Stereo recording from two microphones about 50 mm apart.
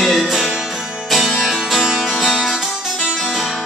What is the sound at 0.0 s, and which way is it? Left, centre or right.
Music, centre.